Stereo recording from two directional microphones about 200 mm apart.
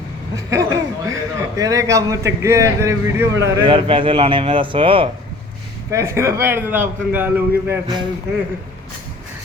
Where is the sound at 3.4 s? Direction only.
25° right (ahead or behind).